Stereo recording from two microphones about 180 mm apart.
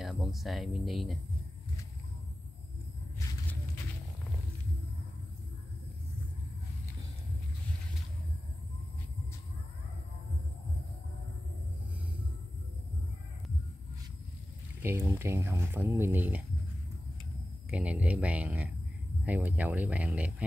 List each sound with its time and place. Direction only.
0.0 s speech: centre (ahead or behind)
14.8 s speech: 15° right (ahead or behind)
17.6 s speech: 5° right (ahead or behind)